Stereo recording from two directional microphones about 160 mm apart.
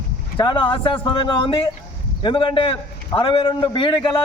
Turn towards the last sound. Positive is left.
turn(degrees=30)  # may be behind; listen again after turning